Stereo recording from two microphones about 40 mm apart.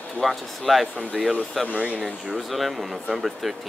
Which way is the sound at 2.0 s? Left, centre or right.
Centre.